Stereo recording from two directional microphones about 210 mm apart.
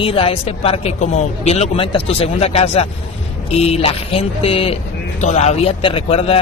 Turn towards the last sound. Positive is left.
turn(degrees=25)  # may be behind; listen again after turning